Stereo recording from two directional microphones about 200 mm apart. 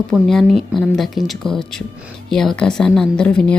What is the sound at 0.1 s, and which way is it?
A woman's voice, centre (ahead or behind).